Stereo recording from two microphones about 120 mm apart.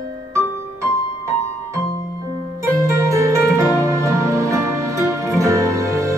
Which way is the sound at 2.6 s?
25° right (ahead or behind).